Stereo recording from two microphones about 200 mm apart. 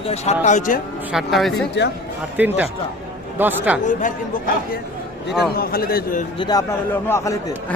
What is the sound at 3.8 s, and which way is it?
A man's voice, 40° left (ahead or behind).